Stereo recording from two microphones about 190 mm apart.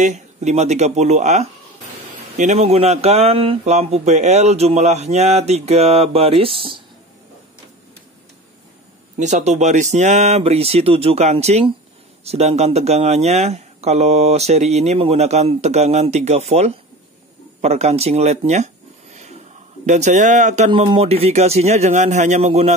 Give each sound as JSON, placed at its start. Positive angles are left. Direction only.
{"t": 0.0, "sound": "speech", "side_deg": -35}
{"t": 9.2, "sound": "speech", "side_deg": -40}
{"t": 19.1, "sound": "a sound", "side_deg": -35}
{"t": 19.9, "sound": "speech", "side_deg": -40}